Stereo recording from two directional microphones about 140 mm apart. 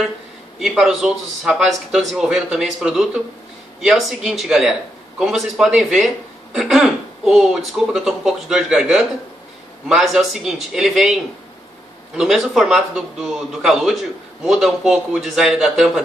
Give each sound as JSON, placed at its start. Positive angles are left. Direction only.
{"t": 0.6, "sound": "a man's voice", "side_deg": -5}
{"t": 12.2, "sound": "a man's voice", "side_deg": -5}